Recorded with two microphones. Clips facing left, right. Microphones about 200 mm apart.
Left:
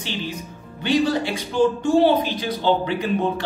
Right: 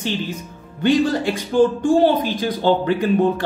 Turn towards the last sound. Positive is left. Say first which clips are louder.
# right 5 dB
turn(degrees=-50)  # may be behind; listen again after turning